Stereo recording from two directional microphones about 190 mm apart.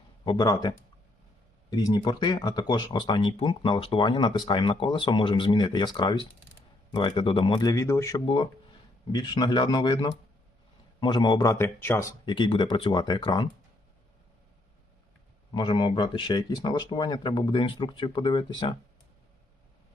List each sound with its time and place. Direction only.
0.3 s speech: 20° left (ahead or behind)
1.7 s speech: 20° left (ahead or behind)
15.5 s speech: 25° left (ahead or behind)